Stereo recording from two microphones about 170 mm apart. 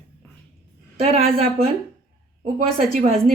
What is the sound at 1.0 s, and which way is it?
Speech, 35° right (ahead or behind).